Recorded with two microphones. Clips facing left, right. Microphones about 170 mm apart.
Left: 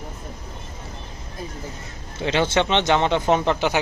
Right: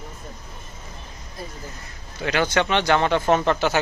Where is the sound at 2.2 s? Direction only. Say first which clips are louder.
Left 1 dB; 25° left (ahead or behind).